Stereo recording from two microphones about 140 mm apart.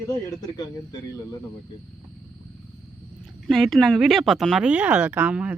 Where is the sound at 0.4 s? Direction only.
25° left (ahead or behind).